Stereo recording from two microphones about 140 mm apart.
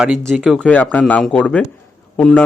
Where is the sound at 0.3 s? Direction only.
Centre (ahead or behind).